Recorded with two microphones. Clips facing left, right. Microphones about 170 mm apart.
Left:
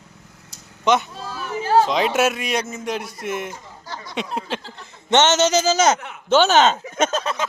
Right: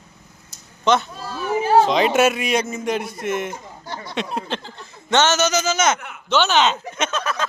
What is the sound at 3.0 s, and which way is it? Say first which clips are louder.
Speech: right 3 dB; 55° right (ahead or behind).